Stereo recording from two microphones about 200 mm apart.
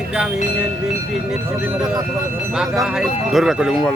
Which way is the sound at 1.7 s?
20° right (ahead or behind).